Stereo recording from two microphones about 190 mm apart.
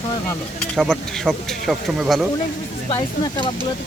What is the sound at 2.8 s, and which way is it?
Speech, 25° left (ahead or behind).